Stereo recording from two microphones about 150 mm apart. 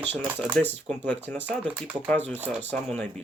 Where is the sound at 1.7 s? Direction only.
10° right (ahead or behind).